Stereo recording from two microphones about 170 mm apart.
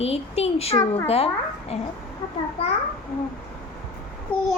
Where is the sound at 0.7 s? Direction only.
20° left (ahead or behind).